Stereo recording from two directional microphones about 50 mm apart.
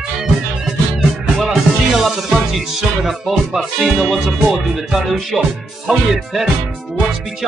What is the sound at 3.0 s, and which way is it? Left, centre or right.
Speech, centre.